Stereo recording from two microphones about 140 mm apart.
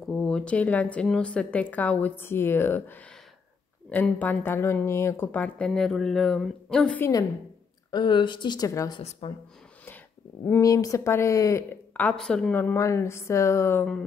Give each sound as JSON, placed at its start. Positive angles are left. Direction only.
{"t": 0.0, "sound": "speech", "side_deg": 5}
{"t": 7.9, "sound": "speech", "side_deg": 30}
{"t": 9.2, "sound": "speech", "side_deg": 40}
{"t": 10.6, "sound": "speech", "side_deg": 25}
{"t": 12.5, "sound": "speech", "side_deg": 20}